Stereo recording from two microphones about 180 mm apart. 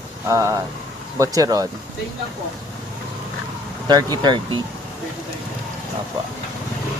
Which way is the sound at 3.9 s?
20° right (ahead or behind).